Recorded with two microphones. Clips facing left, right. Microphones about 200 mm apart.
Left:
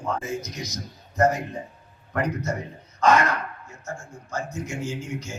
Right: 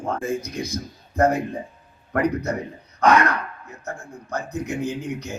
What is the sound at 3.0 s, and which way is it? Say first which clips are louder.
Throat clearing: right 2 dB; 60° right (ahead or behind).